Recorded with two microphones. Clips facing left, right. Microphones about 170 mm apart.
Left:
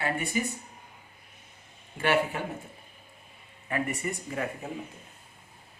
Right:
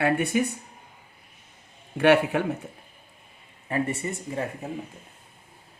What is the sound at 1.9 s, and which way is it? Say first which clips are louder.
Speech: right 7 dB; 65° right (ahead or behind).